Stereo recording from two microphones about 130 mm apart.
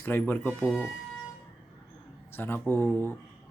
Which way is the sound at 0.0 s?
15° left (ahead or behind).